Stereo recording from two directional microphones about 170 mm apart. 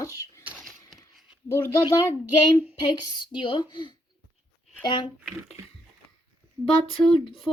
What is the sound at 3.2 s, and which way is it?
Speech, 30° left (ahead or behind).